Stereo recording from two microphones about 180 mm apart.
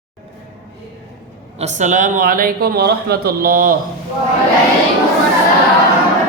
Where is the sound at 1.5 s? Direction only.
40° right (ahead or behind).